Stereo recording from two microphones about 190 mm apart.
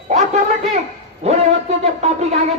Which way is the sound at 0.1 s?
35° right (ahead or behind).